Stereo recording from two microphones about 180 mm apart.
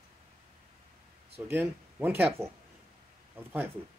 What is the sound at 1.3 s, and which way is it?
Speech, 10° right (ahead or behind).